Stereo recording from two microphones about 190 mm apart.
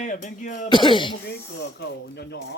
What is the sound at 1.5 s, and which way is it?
Speech, 60° left (ahead or behind).